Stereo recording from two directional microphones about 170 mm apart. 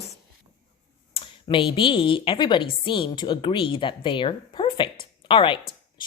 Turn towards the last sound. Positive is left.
turn(degrees=30)  # may be behind; listen again after turning